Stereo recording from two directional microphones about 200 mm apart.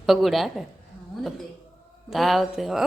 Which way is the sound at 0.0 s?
Centre (ahead or behind).